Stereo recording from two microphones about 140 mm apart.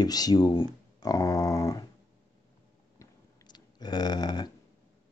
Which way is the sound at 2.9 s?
25° left (ahead or behind).